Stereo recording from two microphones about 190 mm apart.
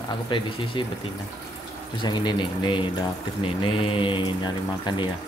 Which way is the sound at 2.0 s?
25° left (ahead or behind).